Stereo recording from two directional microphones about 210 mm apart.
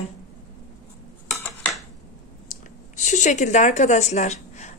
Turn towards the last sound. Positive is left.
turn(degrees=30)  # may be behind; listen again after turning